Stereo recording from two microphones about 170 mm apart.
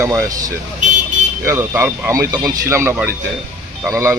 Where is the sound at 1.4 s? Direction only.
15° right (ahead or behind).